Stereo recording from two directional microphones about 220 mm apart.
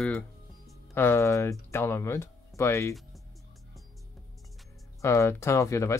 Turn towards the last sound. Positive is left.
turn(degrees=15)  # may be behind; listen again after turning